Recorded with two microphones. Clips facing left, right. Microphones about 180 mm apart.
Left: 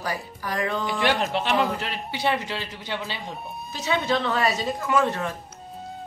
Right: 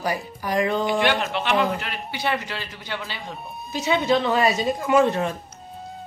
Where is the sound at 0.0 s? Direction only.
15° right (ahead or behind).